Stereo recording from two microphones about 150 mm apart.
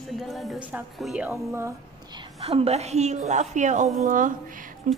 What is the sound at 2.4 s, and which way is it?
A woman's voice, 40° right (ahead or behind).